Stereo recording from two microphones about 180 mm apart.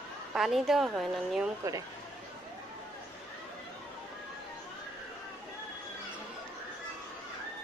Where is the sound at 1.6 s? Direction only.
20° right (ahead or behind).